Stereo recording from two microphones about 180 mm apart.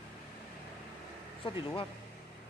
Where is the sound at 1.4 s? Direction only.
30° left (ahead or behind).